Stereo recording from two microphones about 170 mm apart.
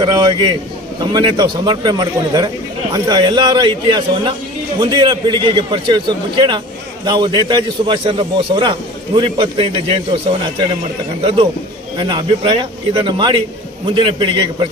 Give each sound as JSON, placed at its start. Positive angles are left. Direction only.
{"t": 0.0, "sound": "a man's voice", "side_deg": -25}
{"t": 12.0, "sound": "a man's voice", "side_deg": -25}